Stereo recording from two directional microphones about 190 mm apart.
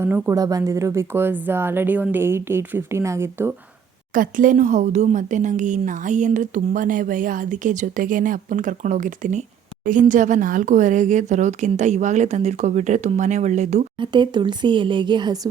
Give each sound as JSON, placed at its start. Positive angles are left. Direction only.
{"t": 0.0, "sound": "speech", "side_deg": -15}
{"t": 4.1, "sound": "a woman's voice", "side_deg": -45}
{"t": 14.0, "sound": "speech", "side_deg": -25}